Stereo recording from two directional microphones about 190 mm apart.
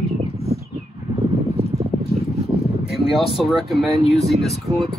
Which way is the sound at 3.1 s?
Centre (ahead or behind).